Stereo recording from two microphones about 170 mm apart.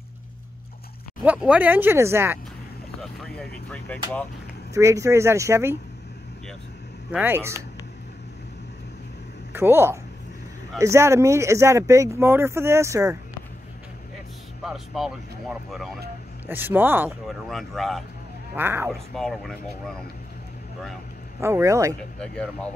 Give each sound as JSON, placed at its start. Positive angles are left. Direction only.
{"t": 1.2, "sound": "speech", "side_deg": -5}
{"t": 3.0, "sound": "a sound", "side_deg": 0}
{"t": 4.7, "sound": "speech", "side_deg": -15}
{"t": 7.1, "sound": "speech", "side_deg": -10}
{"t": 9.5, "sound": "speech", "side_deg": -15}
{"t": 14.6, "sound": "speech", "side_deg": 0}
{"t": 16.4, "sound": "speech", "side_deg": -10}
{"t": 17.3, "sound": "speech", "side_deg": 0}
{"t": 18.5, "sound": "speech", "side_deg": -10}
{"t": 18.9, "sound": "speech", "side_deg": 0}
{"t": 21.4, "sound": "speech", "side_deg": -15}
{"t": 22.2, "sound": "speech", "side_deg": 5}